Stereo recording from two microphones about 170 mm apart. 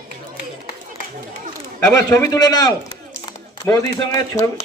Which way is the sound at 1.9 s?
20° left (ahead or behind).